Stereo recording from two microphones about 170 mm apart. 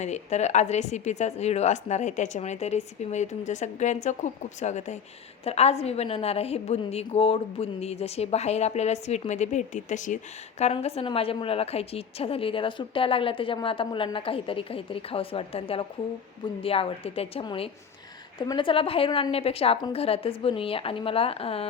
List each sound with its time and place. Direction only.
0.0 s a woman's voice: 40° left (ahead or behind)